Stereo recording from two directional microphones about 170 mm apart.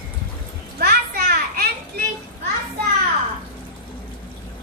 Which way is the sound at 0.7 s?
70° right (ahead or behind).